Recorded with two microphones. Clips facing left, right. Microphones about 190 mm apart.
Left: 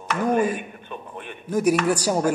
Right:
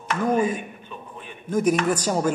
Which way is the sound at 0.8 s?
60° left (ahead or behind).